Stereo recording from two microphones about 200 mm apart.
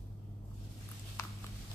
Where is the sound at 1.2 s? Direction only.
15° left (ahead or behind).